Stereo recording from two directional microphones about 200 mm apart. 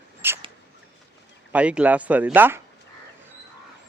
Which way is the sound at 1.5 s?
5° right (ahead or behind).